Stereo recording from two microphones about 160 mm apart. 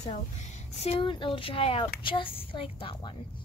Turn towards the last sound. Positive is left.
turn(degrees=35)  # may be behind; listen again after turning